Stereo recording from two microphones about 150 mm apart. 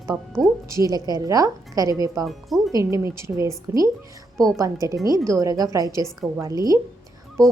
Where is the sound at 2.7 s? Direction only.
20° right (ahead or behind).